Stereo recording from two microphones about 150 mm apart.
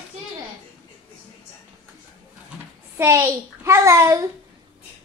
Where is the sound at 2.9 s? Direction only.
20° right (ahead or behind).